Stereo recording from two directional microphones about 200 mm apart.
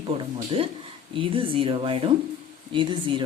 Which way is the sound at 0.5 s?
25° right (ahead or behind).